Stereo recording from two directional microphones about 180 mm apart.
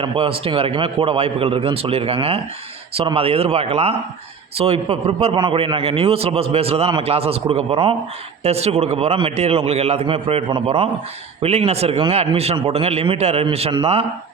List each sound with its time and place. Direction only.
0.0 s a man's voice: 30° right (ahead or behind)